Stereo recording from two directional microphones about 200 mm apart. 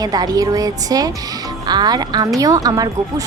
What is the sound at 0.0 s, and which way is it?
Speech, 20° right (ahead or behind).